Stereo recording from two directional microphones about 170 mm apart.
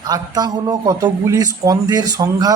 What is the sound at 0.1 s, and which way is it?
Speech, 25° right (ahead or behind).